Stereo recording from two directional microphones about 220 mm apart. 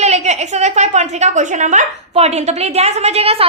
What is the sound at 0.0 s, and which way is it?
A woman's voice, 30° right (ahead or behind).